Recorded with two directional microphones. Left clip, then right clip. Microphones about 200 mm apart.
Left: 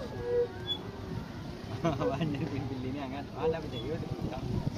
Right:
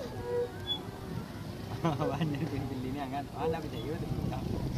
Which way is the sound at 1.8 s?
45° right (ahead or behind).